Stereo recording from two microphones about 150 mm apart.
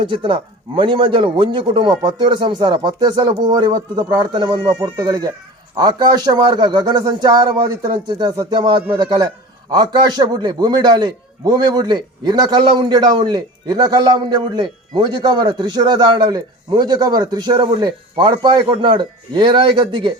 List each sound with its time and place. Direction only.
0.0 s a man's voice: 35° right (ahead or behind)